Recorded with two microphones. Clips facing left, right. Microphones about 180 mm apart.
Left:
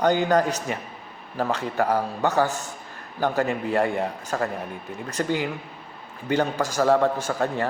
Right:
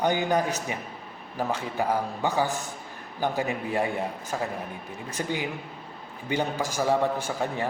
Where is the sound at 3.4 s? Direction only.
60° left (ahead or behind).